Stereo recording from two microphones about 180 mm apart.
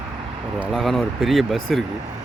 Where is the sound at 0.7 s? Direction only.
Centre (ahead or behind).